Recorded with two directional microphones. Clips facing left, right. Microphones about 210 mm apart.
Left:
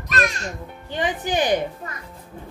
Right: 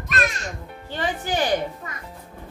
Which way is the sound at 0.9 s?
15° left (ahead or behind).